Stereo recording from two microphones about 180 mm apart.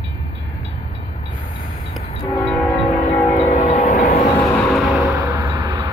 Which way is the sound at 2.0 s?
35° left (ahead or behind).